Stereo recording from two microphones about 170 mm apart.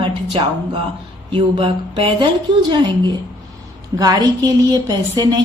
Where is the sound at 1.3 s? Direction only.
30° right (ahead or behind).